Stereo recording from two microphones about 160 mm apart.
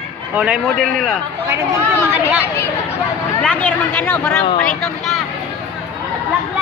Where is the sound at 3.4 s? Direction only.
10° left (ahead or behind).